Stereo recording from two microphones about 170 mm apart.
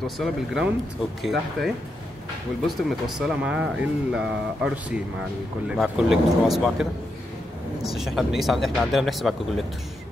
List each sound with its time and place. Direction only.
0.0 s speech: centre (ahead or behind)